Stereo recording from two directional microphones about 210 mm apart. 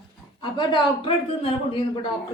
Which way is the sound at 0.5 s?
25° left (ahead or behind).